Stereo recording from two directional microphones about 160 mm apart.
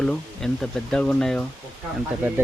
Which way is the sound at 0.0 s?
5° left (ahead or behind).